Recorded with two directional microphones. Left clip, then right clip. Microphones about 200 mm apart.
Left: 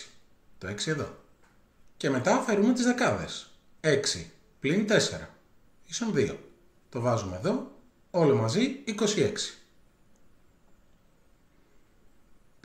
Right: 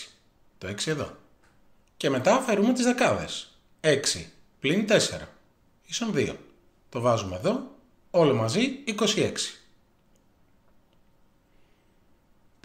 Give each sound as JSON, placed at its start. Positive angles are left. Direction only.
{"t": 0.6, "sound": "speech", "side_deg": 0}